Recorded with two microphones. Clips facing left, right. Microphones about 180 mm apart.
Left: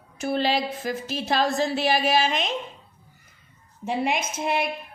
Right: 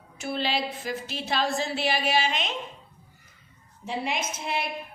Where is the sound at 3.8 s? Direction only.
55° left (ahead or behind).